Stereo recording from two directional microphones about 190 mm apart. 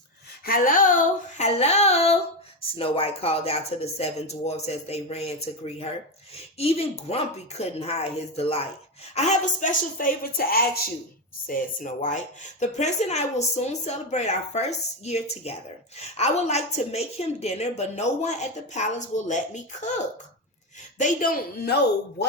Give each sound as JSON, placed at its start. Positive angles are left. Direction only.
{"t": 0.4, "sound": "a woman's voice", "side_deg": 50}
{"t": 21.0, "sound": "a woman's voice", "side_deg": 45}